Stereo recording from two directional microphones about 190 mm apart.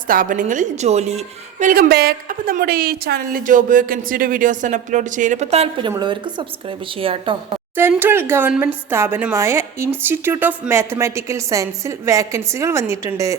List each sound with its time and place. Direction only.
0.1 s a woman's voice: 45° right (ahead or behind); by 7.3 s 30° right (ahead or behind)
7.8 s a woman's voice: 10° right (ahead or behind)